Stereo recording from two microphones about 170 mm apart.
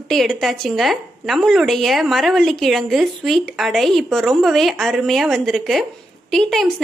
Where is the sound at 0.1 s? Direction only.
Centre (ahead or behind).